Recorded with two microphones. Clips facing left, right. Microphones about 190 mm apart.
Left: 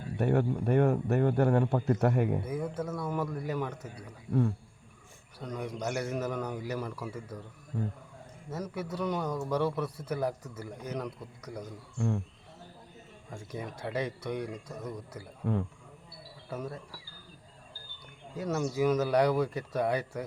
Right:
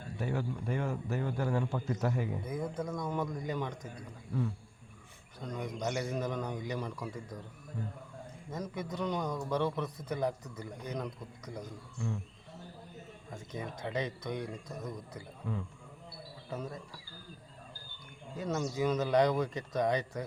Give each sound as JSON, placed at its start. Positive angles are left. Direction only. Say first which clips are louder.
{"t": 0.2, "sound": "a man's voice", "louder": "left 8 dB", "side_deg": 60}
{"t": 2.4, "sound": "speech", "louder": "left 2 dB", "side_deg": 5}
{"t": 3.9, "sound": "a man's voice", "louder": "left 7 dB", "side_deg": 55}
{"t": 5.4, "sound": "speech", "louder": "left 1 dB", "side_deg": 5}
{"t": 7.7, "sound": "a man's voice", "louder": "left 7 dB", "side_deg": 60}
{"t": 8.7, "sound": "speech", "louder": "left 2 dB", "side_deg": 10}
{"t": 11.9, "sound": "a man's voice", "louder": "left 7 dB", "side_deg": 55}
{"t": 13.3, "sound": "speech", "louder": "left 2 dB", "side_deg": 10}
{"t": 15.4, "sound": "a man's voice", "louder": "left 8 dB", "side_deg": 65}
{"t": 16.5, "sound": "speech", "louder": "left 2 dB", "side_deg": 10}
{"t": 18.3, "sound": "speech", "louder": "left 3 dB", "side_deg": 10}